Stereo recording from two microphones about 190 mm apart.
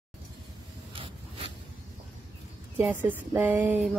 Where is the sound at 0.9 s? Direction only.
30° right (ahead or behind).